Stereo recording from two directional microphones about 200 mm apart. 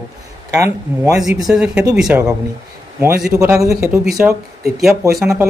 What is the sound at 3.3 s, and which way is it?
Speech, 15° right (ahead or behind).